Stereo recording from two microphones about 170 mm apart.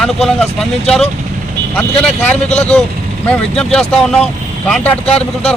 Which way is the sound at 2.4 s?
40° left (ahead or behind).